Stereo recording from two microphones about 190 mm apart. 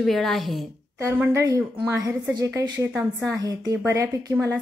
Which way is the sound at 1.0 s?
15° right (ahead or behind).